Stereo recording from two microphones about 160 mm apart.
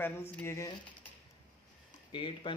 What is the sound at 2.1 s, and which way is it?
Speech, 30° left (ahead or behind).